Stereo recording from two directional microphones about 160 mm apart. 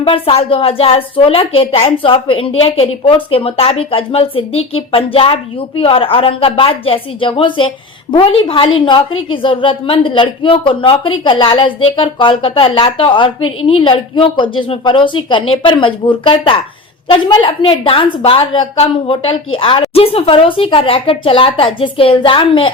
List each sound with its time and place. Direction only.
0.0 s a woman's voice: 35° left (ahead or behind)